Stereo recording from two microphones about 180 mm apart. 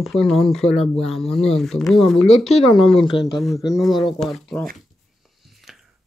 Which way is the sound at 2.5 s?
30° left (ahead or behind).